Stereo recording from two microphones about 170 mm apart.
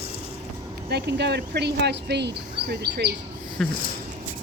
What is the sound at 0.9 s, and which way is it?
Speech, 80° right.